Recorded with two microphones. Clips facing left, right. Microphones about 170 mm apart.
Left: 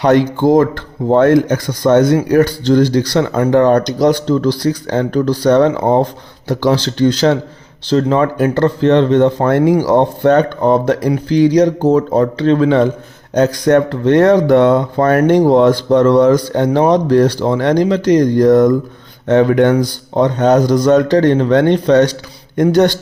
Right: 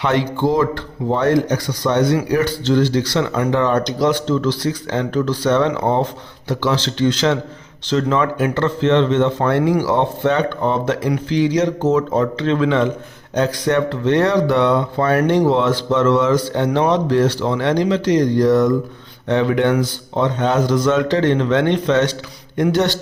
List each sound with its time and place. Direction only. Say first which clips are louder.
0.0 s speech: left 7 dB; 45° left (ahead or behind)